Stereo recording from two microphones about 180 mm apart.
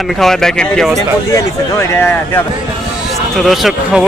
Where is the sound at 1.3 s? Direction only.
15° left (ahead or behind).